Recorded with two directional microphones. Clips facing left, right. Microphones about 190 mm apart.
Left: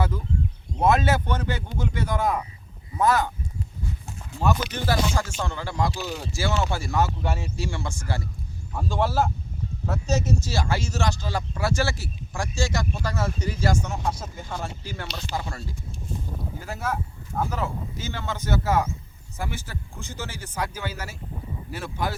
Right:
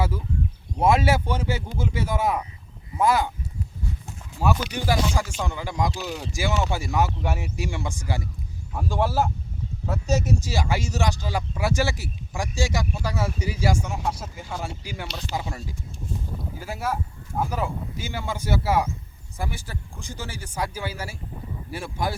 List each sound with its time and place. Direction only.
0.8 s speech: 10° right (ahead or behind)
4.4 s speech: 10° right (ahead or behind)
21.7 s a sound: 10° right (ahead or behind)